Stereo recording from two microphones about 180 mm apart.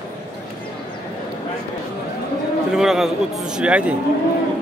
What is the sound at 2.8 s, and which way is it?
A man's voice, centre (ahead or behind).